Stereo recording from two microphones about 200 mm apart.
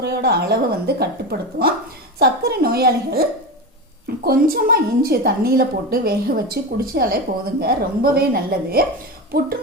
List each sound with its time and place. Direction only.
0.0 s a woman's voice: 55° right (ahead or behind)